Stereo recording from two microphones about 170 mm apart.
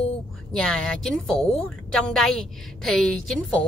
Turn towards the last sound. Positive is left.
turn(degrees=5)  # may be behind; listen again after turning